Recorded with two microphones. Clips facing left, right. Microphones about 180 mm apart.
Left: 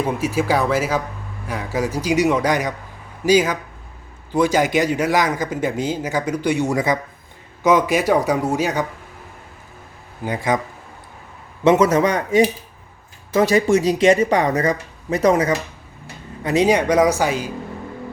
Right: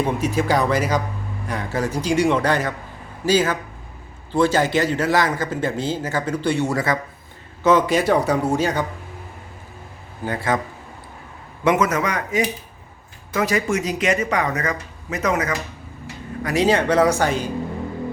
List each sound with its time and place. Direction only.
0.0 s a man's voice: 5° left (ahead or behind)
10.2 s a man's voice: 15° left (ahead or behind)
11.6 s speech: 25° left (ahead or behind)
16.4 s a man's voice: 20° left (ahead or behind)